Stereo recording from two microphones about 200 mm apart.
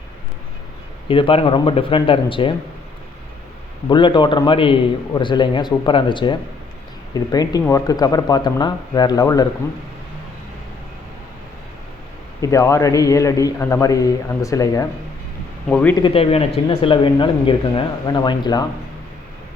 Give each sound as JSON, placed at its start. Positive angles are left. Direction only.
{"t": 1.0, "sound": "speech", "side_deg": 25}
{"t": 3.8, "sound": "speech", "side_deg": 25}
{"t": 12.4, "sound": "a man's voice", "side_deg": 15}
{"t": 16.0, "sound": "speech", "side_deg": 25}